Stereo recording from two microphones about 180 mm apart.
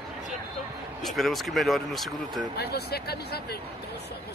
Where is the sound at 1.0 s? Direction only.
Centre (ahead or behind).